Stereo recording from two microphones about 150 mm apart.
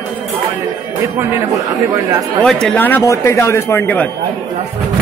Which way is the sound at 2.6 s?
10° left (ahead or behind).